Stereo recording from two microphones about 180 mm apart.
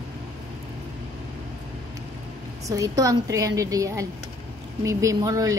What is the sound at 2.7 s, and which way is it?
A woman's voice, 20° right (ahead or behind).